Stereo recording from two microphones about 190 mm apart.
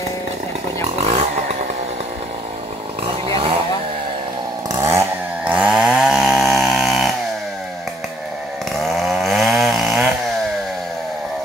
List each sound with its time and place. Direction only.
1.0 s chainsaw: 35° right (ahead or behind)
3.3 s chainsaw: 25° right (ahead or behind)
4.7 s chainsaw: 15° right (ahead or behind)
8.7 s chainsaw: centre (ahead or behind)